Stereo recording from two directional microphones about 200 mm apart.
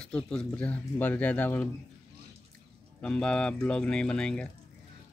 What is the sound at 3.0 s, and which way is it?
Speech, 5° left (ahead or behind).